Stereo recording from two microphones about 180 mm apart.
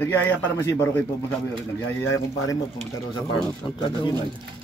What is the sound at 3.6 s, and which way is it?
Speech, 25° left (ahead or behind).